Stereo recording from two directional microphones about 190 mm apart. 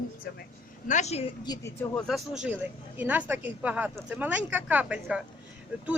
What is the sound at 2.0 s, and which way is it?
A woman's voice, centre (ahead or behind).